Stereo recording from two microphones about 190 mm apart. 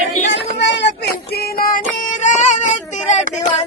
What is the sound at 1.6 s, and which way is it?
Music, 50° left (ahead or behind).